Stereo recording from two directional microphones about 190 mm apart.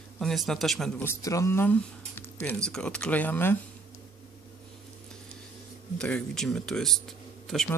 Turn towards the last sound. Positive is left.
turn(degrees=0)  # may be behind; listen again after turning